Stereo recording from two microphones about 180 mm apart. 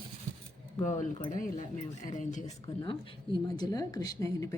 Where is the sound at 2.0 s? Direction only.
45° left (ahead or behind).